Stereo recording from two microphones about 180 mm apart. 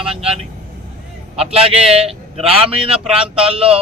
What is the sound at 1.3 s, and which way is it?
Speech, 35° right (ahead or behind).